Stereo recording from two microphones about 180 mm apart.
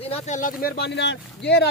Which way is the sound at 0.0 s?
35° left (ahead or behind).